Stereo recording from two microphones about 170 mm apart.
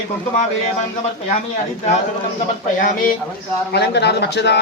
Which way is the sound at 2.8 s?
55° left (ahead or behind).